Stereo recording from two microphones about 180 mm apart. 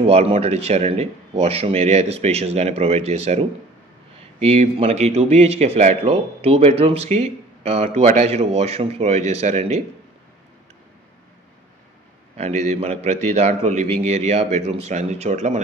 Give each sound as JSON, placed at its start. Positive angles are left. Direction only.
{"t": 0.0, "sound": "speech", "side_deg": -35}
{"t": 12.4, "sound": "speech", "side_deg": -40}